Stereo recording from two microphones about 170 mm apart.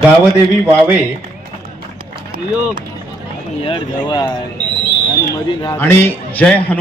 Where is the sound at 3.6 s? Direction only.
30° left (ahead or behind).